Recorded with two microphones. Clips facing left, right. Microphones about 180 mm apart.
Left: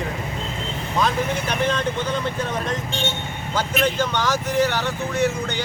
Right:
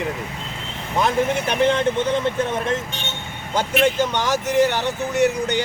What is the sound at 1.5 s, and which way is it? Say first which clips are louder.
Speech: right 5 dB; 20° right (ahead or behind).